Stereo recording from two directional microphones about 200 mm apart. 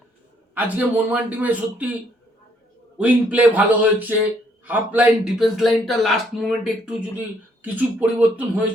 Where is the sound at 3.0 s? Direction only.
5° right (ahead or behind).